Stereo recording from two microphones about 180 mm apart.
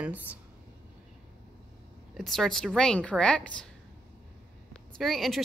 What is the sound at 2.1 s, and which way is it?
A woman's voice, centre (ahead or behind).